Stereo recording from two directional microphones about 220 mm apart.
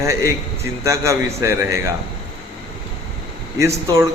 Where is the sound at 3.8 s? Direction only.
15° right (ahead or behind).